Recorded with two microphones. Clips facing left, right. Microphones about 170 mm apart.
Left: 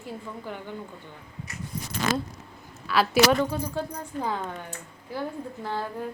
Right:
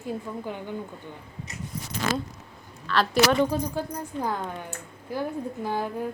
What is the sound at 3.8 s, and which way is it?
Speech, 10° right (ahead or behind).